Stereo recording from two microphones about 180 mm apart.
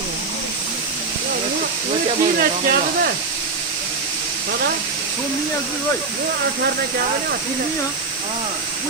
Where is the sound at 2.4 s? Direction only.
55° right (ahead or behind).